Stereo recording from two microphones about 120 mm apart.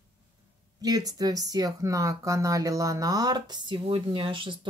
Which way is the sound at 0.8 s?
30° right (ahead or behind).